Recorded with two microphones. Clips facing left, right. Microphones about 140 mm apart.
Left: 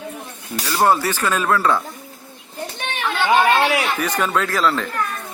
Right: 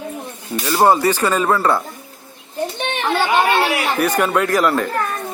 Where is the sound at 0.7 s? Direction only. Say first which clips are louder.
Right 3 dB; 15° right (ahead or behind).